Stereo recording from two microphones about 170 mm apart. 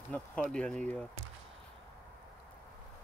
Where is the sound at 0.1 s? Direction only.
5° left (ahead or behind).